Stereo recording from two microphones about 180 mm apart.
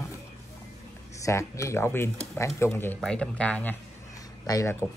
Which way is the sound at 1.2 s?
15° left (ahead or behind).